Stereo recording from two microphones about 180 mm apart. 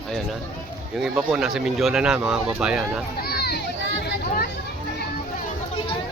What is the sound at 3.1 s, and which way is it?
Speech, 60° left (ahead or behind).